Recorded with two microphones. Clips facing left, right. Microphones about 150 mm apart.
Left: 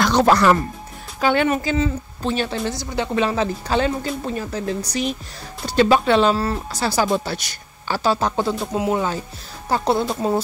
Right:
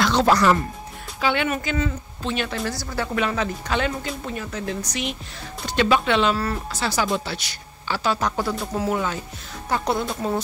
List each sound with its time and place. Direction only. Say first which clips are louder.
0.0 s speech: left 3 dB; 45° left (ahead or behind)
1.2 s a woman's voice: left 5 dB; 40° left (ahead or behind)